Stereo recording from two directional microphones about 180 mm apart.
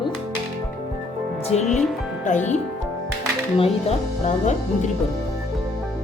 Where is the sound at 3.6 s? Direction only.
35° left (ahead or behind).